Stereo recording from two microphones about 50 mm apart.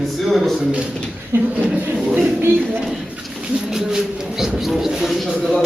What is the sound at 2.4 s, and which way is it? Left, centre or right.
Speech, right.